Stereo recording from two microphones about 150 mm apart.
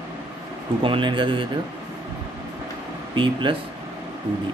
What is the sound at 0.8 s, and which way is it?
Speech, 35° right (ahead or behind).